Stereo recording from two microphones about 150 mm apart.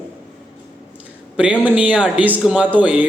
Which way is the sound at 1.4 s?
10° right (ahead or behind).